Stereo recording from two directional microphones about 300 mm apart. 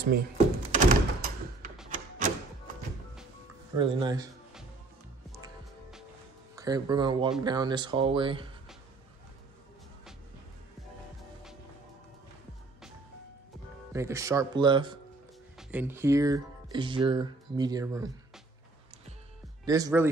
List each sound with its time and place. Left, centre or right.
0.7 s door: right
1.9 s a sound: right
3.7 s speech: centre
6.5 s speech: centre
13.9 s speech: centre
19.6 s speech: centre